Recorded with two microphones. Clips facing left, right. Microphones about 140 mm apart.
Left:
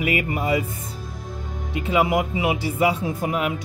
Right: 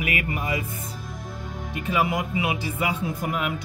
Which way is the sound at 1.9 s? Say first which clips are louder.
Left 4 dB; 25° left (ahead or behind).